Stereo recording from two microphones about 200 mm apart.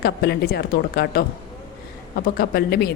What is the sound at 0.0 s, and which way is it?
A woman's voice, 55° left (ahead or behind).